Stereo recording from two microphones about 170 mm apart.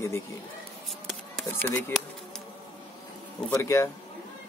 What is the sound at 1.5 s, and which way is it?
Speech, 10° left (ahead or behind).